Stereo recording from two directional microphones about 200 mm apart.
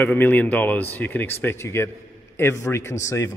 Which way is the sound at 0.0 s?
10° left (ahead or behind).